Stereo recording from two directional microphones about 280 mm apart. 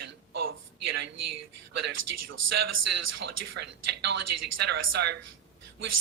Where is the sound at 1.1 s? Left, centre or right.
Right.